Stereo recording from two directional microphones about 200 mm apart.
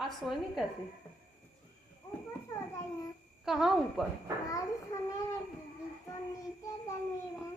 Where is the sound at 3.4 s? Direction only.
Centre (ahead or behind).